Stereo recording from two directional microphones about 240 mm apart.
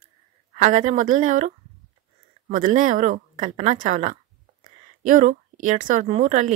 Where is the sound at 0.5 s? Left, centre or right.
Right.